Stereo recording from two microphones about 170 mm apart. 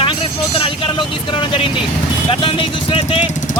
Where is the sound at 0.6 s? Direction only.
30° left (ahead or behind).